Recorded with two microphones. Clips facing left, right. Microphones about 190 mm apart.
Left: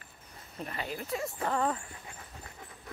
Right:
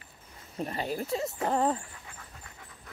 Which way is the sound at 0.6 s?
35° right (ahead or behind).